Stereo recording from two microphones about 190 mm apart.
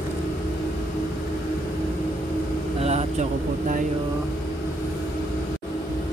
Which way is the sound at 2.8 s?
35° right (ahead or behind).